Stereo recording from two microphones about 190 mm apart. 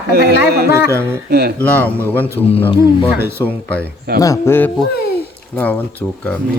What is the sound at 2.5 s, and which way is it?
Speech, 30° left (ahead or behind).